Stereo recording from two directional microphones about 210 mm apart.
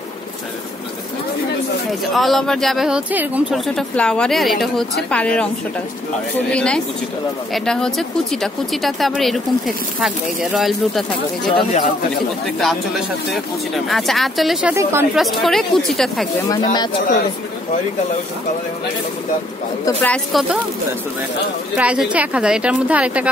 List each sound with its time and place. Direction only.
1.9 s speech: centre (ahead or behind)
6.5 s speech: 5° left (ahead or behind)
12.5 s speech: centre (ahead or behind)
15.1 s speech: centre (ahead or behind)
16.4 s speech: 20° left (ahead or behind)
19.8 s speech: 10° left (ahead or behind)
21.7 s speech: 5° right (ahead or behind)